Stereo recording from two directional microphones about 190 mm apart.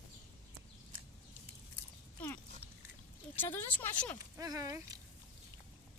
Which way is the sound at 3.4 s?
10° left (ahead or behind).